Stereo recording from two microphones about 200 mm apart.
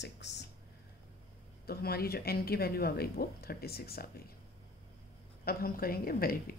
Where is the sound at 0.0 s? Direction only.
60° left (ahead or behind).